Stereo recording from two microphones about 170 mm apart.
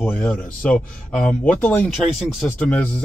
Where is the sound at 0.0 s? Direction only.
10° left (ahead or behind).